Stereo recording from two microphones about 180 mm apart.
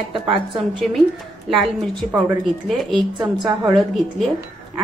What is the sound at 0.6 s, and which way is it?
Speech, centre (ahead or behind).